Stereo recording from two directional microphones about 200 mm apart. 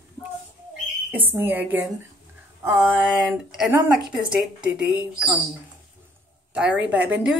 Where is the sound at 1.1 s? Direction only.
10° right (ahead or behind).